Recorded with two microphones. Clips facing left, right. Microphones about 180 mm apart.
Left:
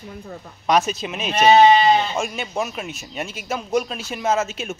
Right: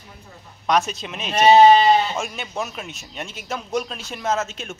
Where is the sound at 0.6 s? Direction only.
Centre (ahead or behind).